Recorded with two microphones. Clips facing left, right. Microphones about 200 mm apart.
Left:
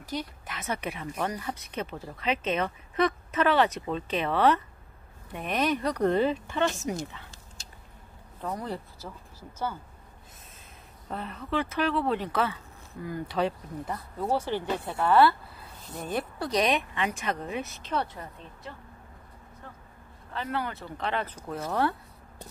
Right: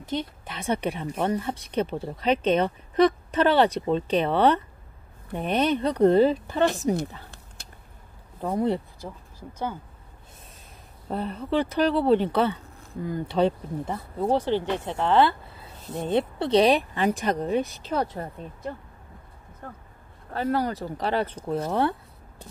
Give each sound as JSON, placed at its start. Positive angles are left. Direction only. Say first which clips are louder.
{"t": 0.0, "sound": "speech", "louder": "right 5 dB", "side_deg": -25}
{"t": 8.4, "sound": "speech", "louder": "right 9 dB", "side_deg": -25}
{"t": 9.5, "sound": "speech", "louder": "right 2 dB", "side_deg": -15}
{"t": 11.1, "sound": "speech", "louder": "right 6 dB", "side_deg": -30}
{"t": 14.4, "sound": "speech", "louder": "right 6 dB", "side_deg": 15}
{"t": 14.8, "sound": "speech", "louder": "left 2 dB", "side_deg": -15}
{"t": 18.1, "sound": "speech", "louder": "right 8 dB", "side_deg": -45}
{"t": 19.6, "sound": "a sound", "louder": "right 7 dB", "side_deg": -50}
{"t": 20.3, "sound": "speech", "louder": "right 7 dB", "side_deg": -40}
{"t": 21.5, "sound": "speech", "louder": "right 3 dB", "side_deg": -25}